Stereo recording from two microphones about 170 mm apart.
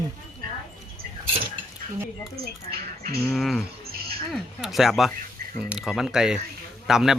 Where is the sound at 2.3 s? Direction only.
65° right (ahead or behind).